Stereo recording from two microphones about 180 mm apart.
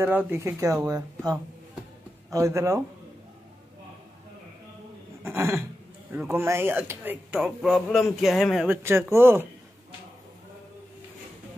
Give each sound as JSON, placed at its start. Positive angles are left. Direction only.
{"t": 0.0, "sound": "speech", "side_deg": -10}
{"t": 5.2, "sound": "a sound", "side_deg": -15}
{"t": 6.1, "sound": "speech", "side_deg": -15}
{"t": 8.8, "sound": "speech", "side_deg": -15}